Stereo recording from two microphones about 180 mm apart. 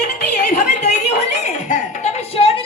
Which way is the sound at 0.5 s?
40° left (ahead or behind).